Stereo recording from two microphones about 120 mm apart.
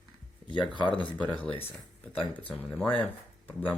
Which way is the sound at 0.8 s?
40° left (ahead or behind).